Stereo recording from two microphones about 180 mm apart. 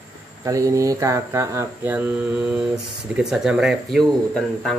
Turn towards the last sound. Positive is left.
turn(degrees=5)  # may be behind; listen again after turning